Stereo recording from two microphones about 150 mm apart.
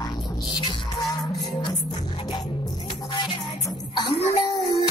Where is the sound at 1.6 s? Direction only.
30° left (ahead or behind).